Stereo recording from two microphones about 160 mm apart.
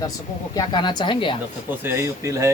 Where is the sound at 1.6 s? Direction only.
15° right (ahead or behind).